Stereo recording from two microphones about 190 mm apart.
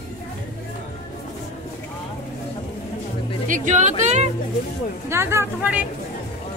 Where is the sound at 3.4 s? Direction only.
40° right (ahead or behind).